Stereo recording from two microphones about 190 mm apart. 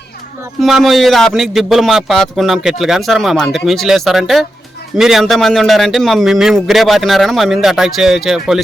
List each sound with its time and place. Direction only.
0.6 s a man's voice: centre (ahead or behind)